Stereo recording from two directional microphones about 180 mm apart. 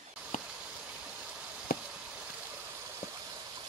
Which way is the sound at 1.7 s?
55° left (ahead or behind).